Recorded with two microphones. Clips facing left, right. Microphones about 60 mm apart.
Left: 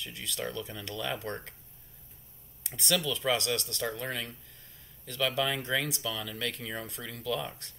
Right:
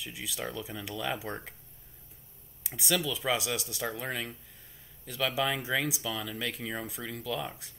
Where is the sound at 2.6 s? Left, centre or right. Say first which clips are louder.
Even; centre.